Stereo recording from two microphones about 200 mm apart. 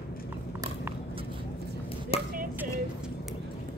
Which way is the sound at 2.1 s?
30° left (ahead or behind).